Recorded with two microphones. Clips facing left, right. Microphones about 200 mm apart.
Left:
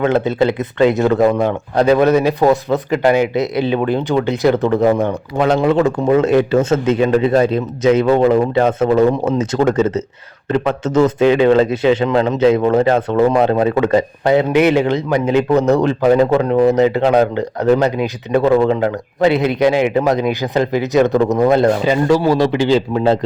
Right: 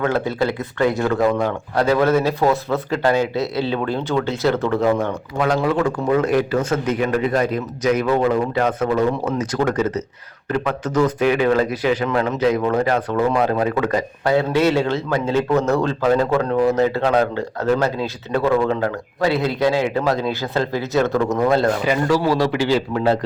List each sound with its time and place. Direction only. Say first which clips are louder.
0.0 s a man's voice: left 5 dB; 20° left (ahead or behind)